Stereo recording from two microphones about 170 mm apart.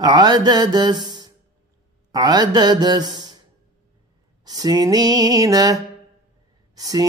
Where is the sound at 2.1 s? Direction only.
25° right (ahead or behind).